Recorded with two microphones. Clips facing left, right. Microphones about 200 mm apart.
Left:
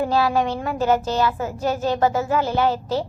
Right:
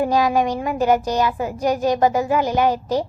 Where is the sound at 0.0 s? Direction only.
15° right (ahead or behind).